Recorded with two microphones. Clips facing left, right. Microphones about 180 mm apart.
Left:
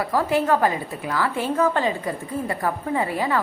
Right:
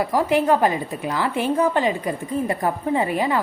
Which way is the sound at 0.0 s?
15° right (ahead or behind).